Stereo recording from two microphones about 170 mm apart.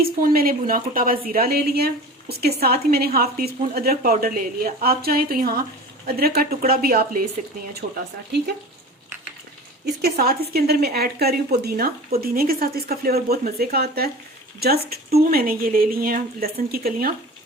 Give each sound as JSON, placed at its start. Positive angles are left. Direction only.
{"t": 0.0, "sound": "a woman's voice", "side_deg": -60}
{"t": 9.8, "sound": "a woman's voice", "side_deg": -65}